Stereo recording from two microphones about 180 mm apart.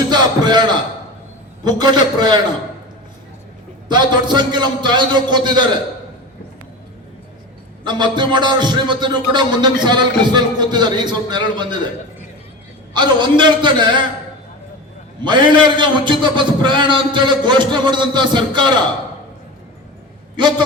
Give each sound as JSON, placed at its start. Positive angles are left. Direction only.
{"t": 0.1, "sound": "a sound", "side_deg": -25}
{"t": 1.6, "sound": "music", "side_deg": -25}
{"t": 3.8, "sound": "music", "side_deg": -25}
{"t": 7.9, "sound": "music", "side_deg": -25}
{"t": 12.9, "sound": "music", "side_deg": -25}
{"t": 15.2, "sound": "music", "side_deg": -25}
{"t": 20.3, "sound": "a man's voice", "side_deg": -25}